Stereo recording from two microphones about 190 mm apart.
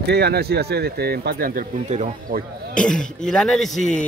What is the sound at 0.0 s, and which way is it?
Speech, 60° right (ahead or behind).